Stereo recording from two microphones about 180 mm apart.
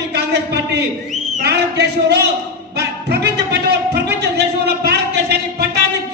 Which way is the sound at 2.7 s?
65° right (ahead or behind).